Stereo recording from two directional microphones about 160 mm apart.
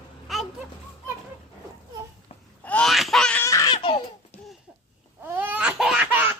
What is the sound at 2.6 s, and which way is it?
Laughter, 5° left (ahead or behind).